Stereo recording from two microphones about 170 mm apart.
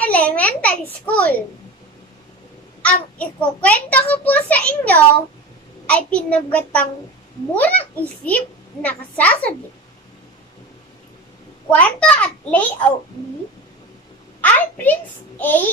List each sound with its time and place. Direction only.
0.0 s a sound: 10° left (ahead or behind)
2.8 s a child's voice: 5° left (ahead or behind)
11.7 s a child's voice: 10° left (ahead or behind)
14.4 s a child's voice: 10° left (ahead or behind)